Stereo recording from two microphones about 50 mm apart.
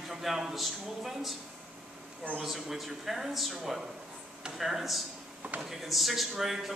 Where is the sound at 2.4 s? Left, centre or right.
Centre.